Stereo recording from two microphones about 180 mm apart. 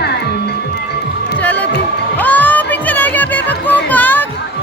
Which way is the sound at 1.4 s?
10° left (ahead or behind).